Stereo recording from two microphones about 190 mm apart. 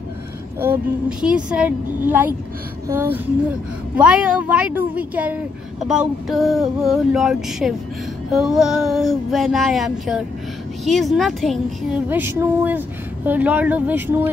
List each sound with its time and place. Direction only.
0.6 s speech: 10° right (ahead or behind)
5.9 s female singing: centre (ahead or behind)
12.1 s speech: 10° right (ahead or behind)